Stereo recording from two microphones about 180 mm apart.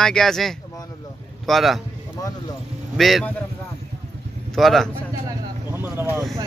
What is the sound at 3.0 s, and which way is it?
Speech, centre (ahead or behind).